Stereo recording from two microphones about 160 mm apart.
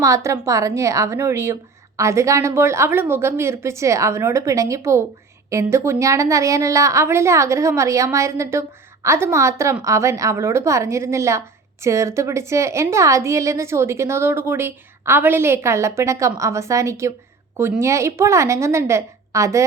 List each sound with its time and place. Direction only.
0.0 s a woman's voice: 20° right (ahead or behind)